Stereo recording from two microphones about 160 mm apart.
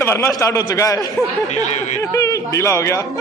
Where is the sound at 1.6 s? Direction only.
50° left (ahead or behind).